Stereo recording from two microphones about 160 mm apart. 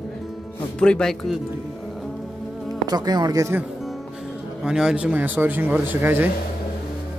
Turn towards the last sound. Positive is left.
turn(degrees=-15)  # may be behind; listen again after turning